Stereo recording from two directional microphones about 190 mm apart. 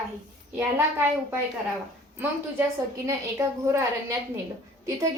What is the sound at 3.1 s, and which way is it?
Speech, 15° right (ahead or behind).